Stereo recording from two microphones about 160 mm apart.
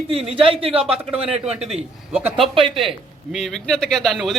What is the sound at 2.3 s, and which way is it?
Speech, 30° right (ahead or behind).